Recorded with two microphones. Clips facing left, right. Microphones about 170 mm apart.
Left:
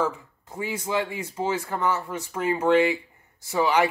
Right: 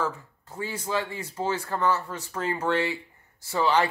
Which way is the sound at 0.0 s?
15° left (ahead or behind).